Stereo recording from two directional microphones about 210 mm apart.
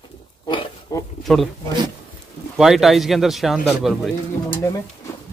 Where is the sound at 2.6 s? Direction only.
Centre (ahead or behind).